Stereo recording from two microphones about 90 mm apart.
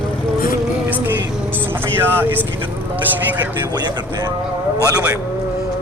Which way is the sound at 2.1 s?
20° right (ahead or behind).